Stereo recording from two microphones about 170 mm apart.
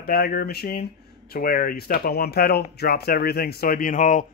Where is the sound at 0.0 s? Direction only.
60° left (ahead or behind).